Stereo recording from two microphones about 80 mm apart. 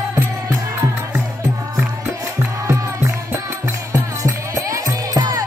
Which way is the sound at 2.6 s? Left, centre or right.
Right.